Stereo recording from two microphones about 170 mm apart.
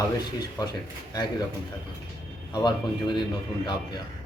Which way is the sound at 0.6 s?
20° left (ahead or behind).